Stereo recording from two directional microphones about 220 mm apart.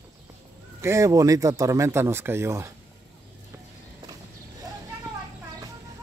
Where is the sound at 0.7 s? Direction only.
15° right (ahead or behind).